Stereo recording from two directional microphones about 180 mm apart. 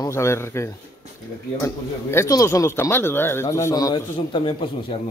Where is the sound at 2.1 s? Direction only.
15° left (ahead or behind).